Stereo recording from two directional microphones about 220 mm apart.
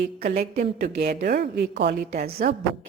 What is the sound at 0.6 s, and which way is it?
A woman's voice, 35° right (ahead or behind).